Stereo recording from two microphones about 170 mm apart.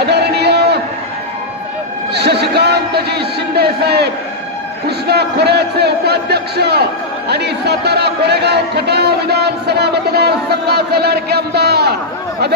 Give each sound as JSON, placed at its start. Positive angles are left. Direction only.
{"t": 0.0, "sound": "a sound", "side_deg": -75}
{"t": 2.1, "sound": "music", "side_deg": -75}
{"t": 4.9, "sound": "a man's voice", "side_deg": -70}